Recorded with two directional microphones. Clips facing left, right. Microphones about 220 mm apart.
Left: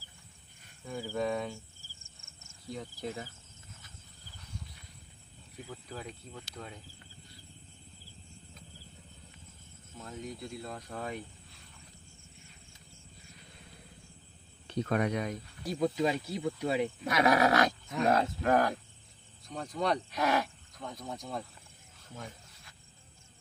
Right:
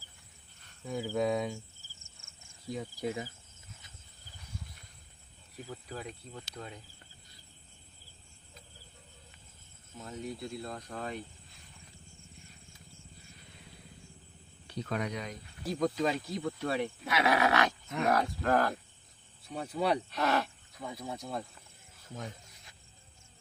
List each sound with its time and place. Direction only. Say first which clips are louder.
0.9 s speech: right 2 dB; 10° right (ahead or behind)
2.7 s speech: right 3 dB; 10° right (ahead or behind)
5.6 s speech: right 1 dB; centre (ahead or behind)
10.0 s speech: right 2 dB; centre (ahead or behind)
14.8 s speech: left 5 dB; 55° left (ahead or behind)
15.6 s speech: even; centre (ahead or behind)
16.0 s speech: left 1 dB; 15° left (ahead or behind)
17.1 s speech: left 2 dB; 40° left (ahead or behind)
18.0 s speech: left 2 dB; 25° left (ahead or behind)
19.5 s speech: right 1 dB; 10° right (ahead or behind)
20.1 s speech: left 1 dB; 10° left (ahead or behind)
20.7 s speech: right 1 dB; 10° right (ahead or behind)
22.1 s wild animals: right 3 dB; 20° right (ahead or behind)